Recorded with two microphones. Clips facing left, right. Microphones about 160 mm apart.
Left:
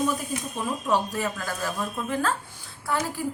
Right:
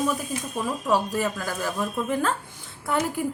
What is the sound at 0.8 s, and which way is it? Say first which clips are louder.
A woman's voice: right 2 dB; 10° right (ahead or behind).